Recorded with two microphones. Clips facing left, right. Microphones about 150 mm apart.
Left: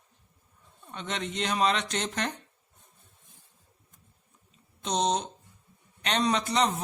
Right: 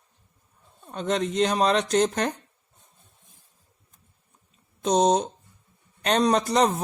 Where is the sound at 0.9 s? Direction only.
40° right (ahead or behind).